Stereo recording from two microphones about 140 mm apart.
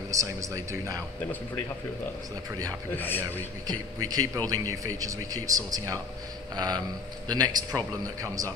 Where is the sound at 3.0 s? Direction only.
15° left (ahead or behind).